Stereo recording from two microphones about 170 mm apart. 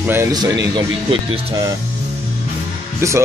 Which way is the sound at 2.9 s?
15° right (ahead or behind).